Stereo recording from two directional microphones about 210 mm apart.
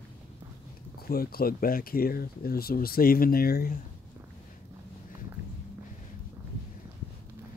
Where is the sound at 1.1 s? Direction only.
45° left (ahead or behind).